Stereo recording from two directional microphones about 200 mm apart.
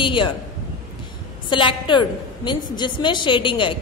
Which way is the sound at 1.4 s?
25° left (ahead or behind).